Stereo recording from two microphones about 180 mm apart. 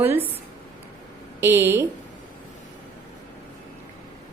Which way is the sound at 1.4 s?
15° right (ahead or behind).